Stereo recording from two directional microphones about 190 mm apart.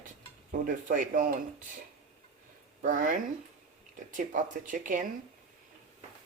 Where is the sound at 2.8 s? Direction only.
45° right (ahead or behind).